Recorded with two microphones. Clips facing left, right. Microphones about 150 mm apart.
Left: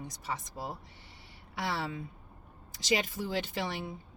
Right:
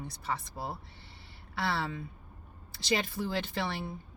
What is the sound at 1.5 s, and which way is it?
Speech, 15° left (ahead or behind).